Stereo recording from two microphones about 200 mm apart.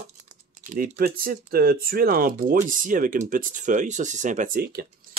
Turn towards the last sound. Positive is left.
turn(degrees=-45)  # may be behind; listen again after turning